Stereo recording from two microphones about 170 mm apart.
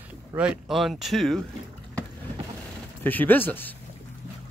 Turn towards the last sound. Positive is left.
turn(degrees=10)  # may be behind; listen again after turning